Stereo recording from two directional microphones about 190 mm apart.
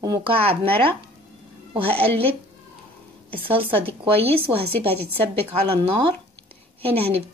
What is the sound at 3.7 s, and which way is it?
Speech, 30° right (ahead or behind).